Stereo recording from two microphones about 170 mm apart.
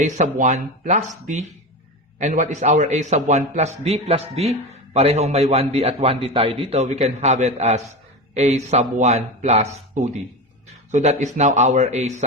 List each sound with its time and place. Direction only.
0.0 s a man's voice: 45° right (ahead or behind)